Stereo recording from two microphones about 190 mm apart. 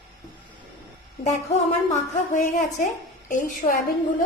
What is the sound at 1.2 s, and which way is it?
A woman's voice, 40° left (ahead or behind).